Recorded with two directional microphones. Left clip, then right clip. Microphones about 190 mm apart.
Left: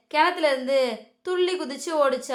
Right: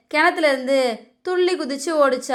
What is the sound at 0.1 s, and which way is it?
A woman's voice, 25° right (ahead or behind).